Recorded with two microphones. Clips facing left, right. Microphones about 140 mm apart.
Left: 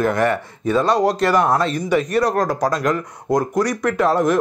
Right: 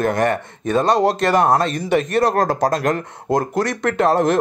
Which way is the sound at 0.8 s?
25° right (ahead or behind).